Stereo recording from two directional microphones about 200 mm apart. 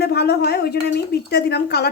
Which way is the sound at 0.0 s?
55° left (ahead or behind).